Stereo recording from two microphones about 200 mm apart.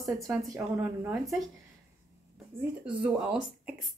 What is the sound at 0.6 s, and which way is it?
Speech, 10° right (ahead or behind).